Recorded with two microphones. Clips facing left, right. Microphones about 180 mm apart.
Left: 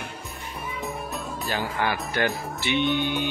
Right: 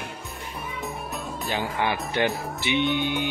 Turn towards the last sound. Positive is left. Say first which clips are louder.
# even
turn(degrees=-15)  # may be behind; listen again after turning